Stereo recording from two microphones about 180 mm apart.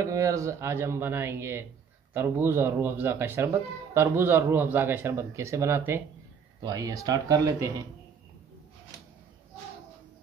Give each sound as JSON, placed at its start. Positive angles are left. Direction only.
{"t": 0.0, "sound": "speech", "side_deg": -20}